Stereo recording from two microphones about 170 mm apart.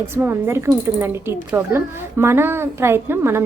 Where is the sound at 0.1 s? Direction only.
15° right (ahead or behind).